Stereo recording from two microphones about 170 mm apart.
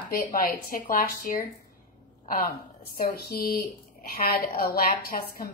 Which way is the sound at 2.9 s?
65° left (ahead or behind).